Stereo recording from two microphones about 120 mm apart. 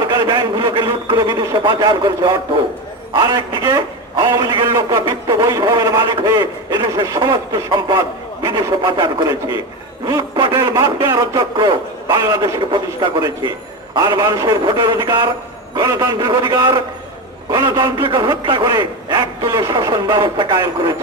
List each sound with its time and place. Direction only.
0.1 s a man's voice: 35° right (ahead or behind)
8.5 s a man's voice: 30° right (ahead or behind)